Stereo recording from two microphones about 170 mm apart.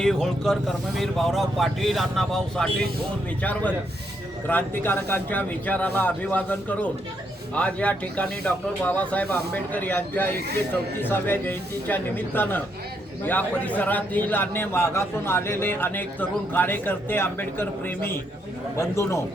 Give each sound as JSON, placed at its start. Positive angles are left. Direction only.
{"t": 0.0, "sound": "speech", "side_deg": 0}